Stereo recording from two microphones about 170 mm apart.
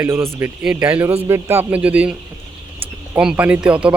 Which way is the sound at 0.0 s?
15° right (ahead or behind).